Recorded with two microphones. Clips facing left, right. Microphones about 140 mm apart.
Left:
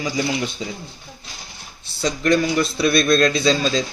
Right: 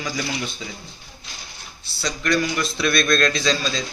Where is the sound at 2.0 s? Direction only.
30° left (ahead or behind).